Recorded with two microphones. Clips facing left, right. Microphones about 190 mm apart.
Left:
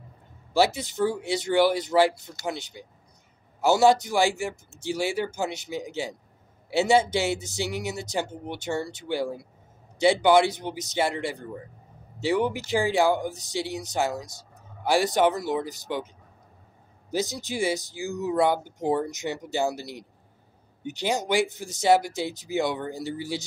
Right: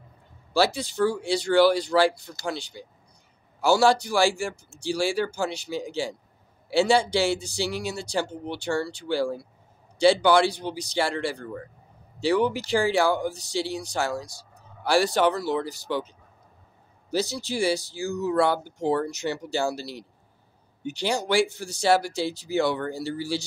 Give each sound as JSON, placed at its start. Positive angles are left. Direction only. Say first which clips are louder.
{"t": 0.5, "sound": "speech", "louder": "even", "side_deg": 20}
{"t": 17.1, "sound": "speech", "louder": "right 1 dB", "side_deg": 20}